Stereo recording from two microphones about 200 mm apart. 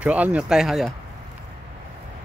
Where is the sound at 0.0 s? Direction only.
5° right (ahead or behind).